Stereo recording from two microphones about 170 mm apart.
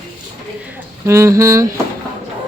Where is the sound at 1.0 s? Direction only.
15° right (ahead or behind).